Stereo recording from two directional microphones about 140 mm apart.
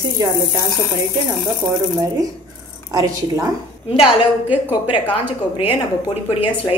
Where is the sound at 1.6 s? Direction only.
20° right (ahead or behind).